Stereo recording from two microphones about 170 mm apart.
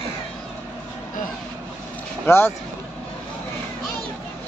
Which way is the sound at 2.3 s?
10° left (ahead or behind).